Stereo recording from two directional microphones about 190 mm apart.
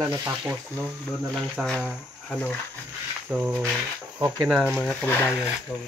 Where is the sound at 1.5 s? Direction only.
5° left (ahead or behind).